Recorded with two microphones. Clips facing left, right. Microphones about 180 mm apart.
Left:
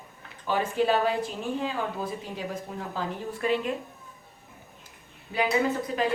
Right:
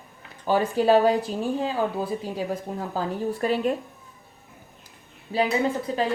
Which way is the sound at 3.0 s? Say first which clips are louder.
Right 6 dB; 40° right (ahead or behind).